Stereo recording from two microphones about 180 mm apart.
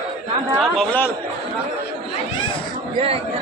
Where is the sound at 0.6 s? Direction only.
Centre (ahead or behind).